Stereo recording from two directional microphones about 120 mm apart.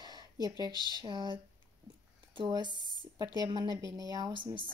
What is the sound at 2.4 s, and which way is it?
Speech, 35° right (ahead or behind).